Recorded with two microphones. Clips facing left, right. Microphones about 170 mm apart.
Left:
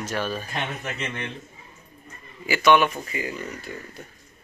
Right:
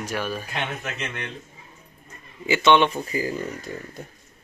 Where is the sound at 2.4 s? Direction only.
25° right (ahead or behind).